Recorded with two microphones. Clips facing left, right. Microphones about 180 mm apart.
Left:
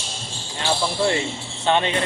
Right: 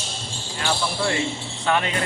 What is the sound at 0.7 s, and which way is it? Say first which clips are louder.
Speech: left 3 dB; 25° left (ahead or behind).